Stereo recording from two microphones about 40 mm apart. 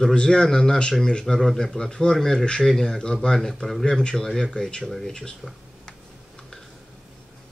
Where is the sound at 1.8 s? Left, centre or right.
Centre.